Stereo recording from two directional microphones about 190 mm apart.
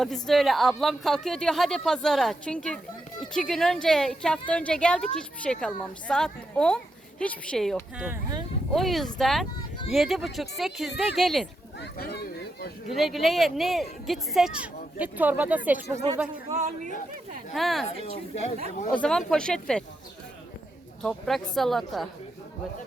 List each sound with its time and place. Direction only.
0.0 s a woman's voice: centre (ahead or behind)
7.9 s a woman's voice: 5° right (ahead or behind)
11.8 s a sound: 55° left (ahead or behind)
12.9 s a woman's voice: centre (ahead or behind)
16.3 s speech: 40° right (ahead or behind)
17.5 s a woman's voice: centre (ahead or behind)
17.8 s speech: 35° left (ahead or behind)
18.9 s a woman's voice: 5° left (ahead or behind)
21.0 s a woman's voice: centre (ahead or behind)